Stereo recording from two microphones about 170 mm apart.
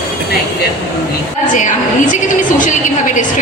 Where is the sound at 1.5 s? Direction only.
50° left (ahead or behind).